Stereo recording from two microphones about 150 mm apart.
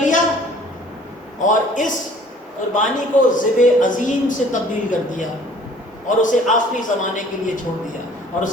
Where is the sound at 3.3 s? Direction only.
55° left (ahead or behind).